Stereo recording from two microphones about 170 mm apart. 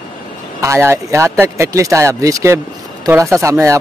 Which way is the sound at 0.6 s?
15° right (ahead or behind).